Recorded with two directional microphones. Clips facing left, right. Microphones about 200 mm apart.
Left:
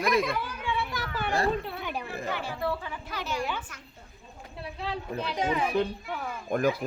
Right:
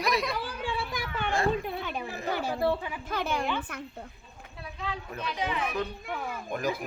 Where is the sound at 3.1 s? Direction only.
55° right (ahead or behind).